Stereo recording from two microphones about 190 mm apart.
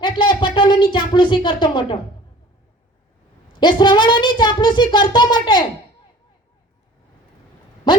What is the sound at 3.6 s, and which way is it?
A child's voice, 25° left (ahead or behind).